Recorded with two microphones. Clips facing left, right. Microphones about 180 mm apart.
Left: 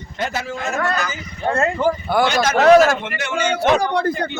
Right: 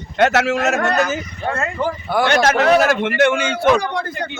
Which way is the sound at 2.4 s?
65° right (ahead or behind).